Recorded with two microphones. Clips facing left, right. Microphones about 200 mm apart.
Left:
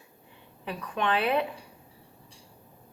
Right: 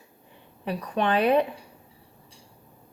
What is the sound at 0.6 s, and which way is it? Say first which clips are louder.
Speech: right 4 dB; 35° right (ahead or behind).